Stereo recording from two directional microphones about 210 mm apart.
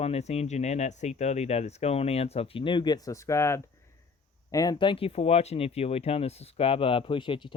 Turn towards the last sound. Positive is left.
turn(degrees=25)  # may be behind; listen again after turning